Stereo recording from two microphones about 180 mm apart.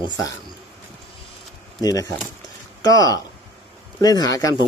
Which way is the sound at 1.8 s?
20° left (ahead or behind).